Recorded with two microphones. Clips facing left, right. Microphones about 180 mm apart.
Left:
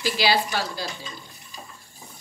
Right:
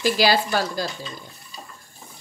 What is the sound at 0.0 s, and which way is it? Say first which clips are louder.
Speech: right 3 dB; 45° right (ahead or behind).